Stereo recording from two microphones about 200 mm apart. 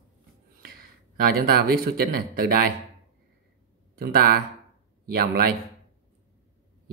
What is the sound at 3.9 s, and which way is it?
A man's voice, 50° right (ahead or behind).